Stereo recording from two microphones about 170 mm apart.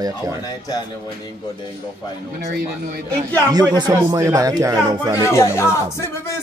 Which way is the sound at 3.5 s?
25° right (ahead or behind).